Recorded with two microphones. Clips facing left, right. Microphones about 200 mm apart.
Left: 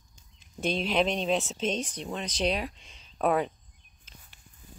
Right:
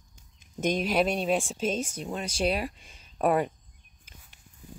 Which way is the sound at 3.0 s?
10° right (ahead or behind).